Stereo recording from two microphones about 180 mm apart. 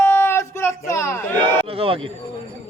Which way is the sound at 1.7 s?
30° right (ahead or behind).